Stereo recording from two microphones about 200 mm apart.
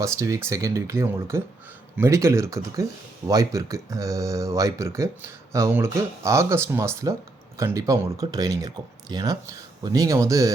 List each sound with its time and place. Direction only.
0.0 s speech: 15° right (ahead or behind)